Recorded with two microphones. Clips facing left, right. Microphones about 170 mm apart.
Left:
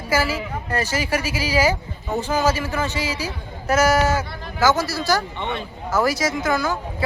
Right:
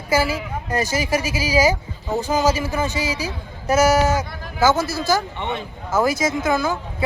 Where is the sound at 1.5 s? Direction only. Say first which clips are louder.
Right 2 dB; 10° right (ahead or behind).